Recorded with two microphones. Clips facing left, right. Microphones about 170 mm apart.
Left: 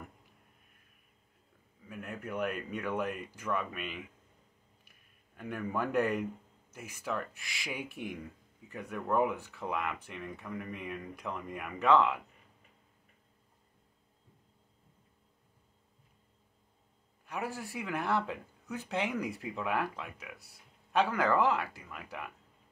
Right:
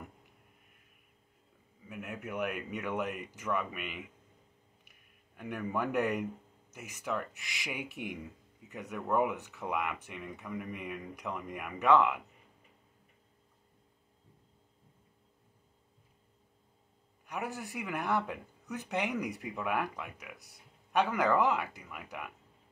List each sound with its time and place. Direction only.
1.9 s speech: 15° right (ahead or behind)
5.3 s speech: 5° right (ahead or behind)
9.0 s speech: 5° right (ahead or behind)
17.3 s speech: 15° right (ahead or behind)